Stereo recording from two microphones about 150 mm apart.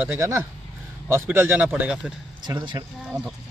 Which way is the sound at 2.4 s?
30° right (ahead or behind).